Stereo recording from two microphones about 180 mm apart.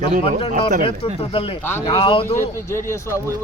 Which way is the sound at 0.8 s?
30° left (ahead or behind).